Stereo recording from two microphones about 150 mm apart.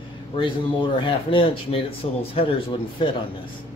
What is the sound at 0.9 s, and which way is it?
Speech, 35° left (ahead or behind).